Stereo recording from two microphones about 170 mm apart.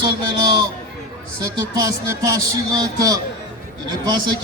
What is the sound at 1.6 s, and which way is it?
A man's voice, 20° right (ahead or behind).